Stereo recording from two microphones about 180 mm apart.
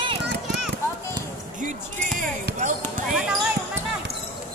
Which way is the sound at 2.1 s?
50° right (ahead or behind).